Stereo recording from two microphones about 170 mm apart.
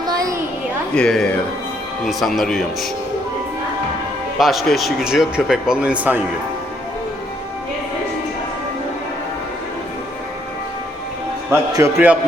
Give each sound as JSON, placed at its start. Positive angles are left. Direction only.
{"t": 0.0, "sound": "a sound", "side_deg": -20}
{"t": 0.9, "sound": "speech", "side_deg": 5}
{"t": 4.4, "sound": "speech", "side_deg": 0}
{"t": 11.5, "sound": "a man's voice", "side_deg": -15}